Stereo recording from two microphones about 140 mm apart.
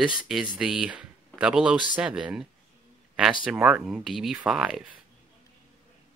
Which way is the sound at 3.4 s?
5° right (ahead or behind).